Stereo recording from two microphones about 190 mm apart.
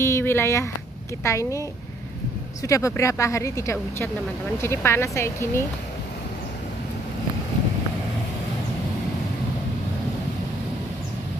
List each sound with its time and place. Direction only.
0.0 s a sound: 15° left (ahead or behind)
1.2 s speech: 15° left (ahead or behind)
2.6 s speech: 15° left (ahead or behind)